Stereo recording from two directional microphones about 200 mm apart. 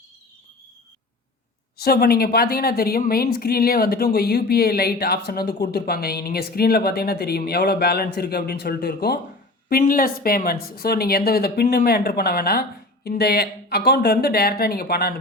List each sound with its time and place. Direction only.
1.8 s a woman's voice: 50° left (ahead or behind)